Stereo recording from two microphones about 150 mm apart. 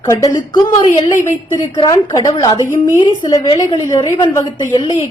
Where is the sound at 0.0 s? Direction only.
25° left (ahead or behind).